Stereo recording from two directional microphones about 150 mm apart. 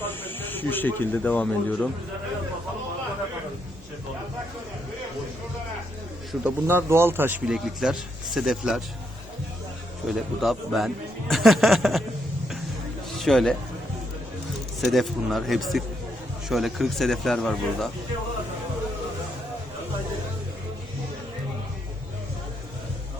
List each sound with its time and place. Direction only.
0.0 s speech: 15° left (ahead or behind)
6.4 s a man's voice: 15° right (ahead or behind)
7.4 s a man's voice: 5° right (ahead or behind)
10.1 s a man's voice: centre (ahead or behind)
13.1 s a man's voice: centre (ahead or behind)
14.8 s a man's voice: centre (ahead or behind)